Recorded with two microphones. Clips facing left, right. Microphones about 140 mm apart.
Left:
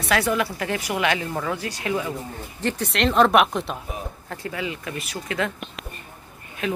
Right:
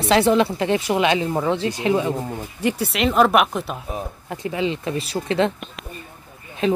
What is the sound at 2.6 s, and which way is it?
Speech, 10° right (ahead or behind).